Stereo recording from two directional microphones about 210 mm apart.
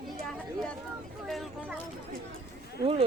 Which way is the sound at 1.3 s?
Centre (ahead or behind).